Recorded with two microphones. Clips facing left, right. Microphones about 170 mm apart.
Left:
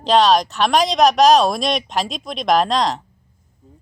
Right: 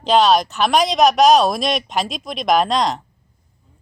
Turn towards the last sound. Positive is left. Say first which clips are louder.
# even
turn(degrees=0)  # may be behind; listen again after turning